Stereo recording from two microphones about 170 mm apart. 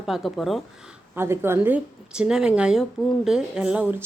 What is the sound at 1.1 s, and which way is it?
Speech, 15° right (ahead or behind).